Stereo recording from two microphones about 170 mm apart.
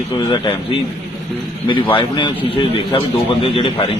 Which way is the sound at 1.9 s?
30° left (ahead or behind).